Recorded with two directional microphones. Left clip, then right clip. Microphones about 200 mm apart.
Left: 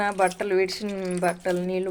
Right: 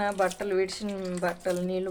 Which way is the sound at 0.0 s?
30° left (ahead or behind).